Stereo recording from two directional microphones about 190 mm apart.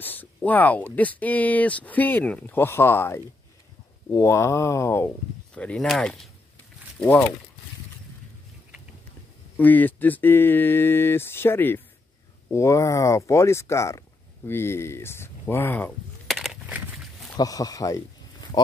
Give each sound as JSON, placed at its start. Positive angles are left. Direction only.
{"t": 0.0, "sound": "speech", "side_deg": 10}
{"t": 9.6, "sound": "speech", "side_deg": 10}
{"t": 17.4, "sound": "speech", "side_deg": 20}